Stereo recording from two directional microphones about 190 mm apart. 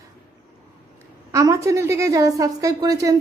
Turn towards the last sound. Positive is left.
turn(degrees=-20)  # may be behind; listen again after turning